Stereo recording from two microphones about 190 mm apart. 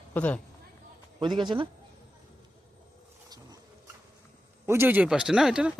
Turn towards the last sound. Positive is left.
turn(degrees=-5)  # may be behind; listen again after turning